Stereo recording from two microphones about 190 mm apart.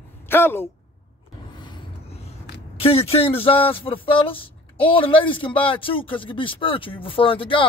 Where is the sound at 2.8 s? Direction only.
30° left (ahead or behind).